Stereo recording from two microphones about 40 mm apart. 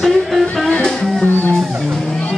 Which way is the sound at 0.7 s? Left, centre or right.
Left.